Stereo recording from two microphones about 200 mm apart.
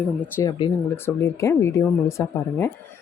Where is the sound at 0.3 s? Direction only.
15° left (ahead or behind).